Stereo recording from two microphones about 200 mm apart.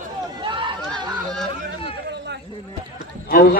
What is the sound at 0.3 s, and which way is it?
Run, 25° right (ahead or behind).